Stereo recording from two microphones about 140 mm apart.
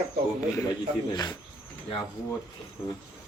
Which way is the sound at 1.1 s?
30° left (ahead or behind).